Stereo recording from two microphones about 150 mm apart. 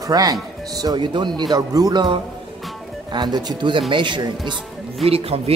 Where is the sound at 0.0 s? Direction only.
25° right (ahead or behind).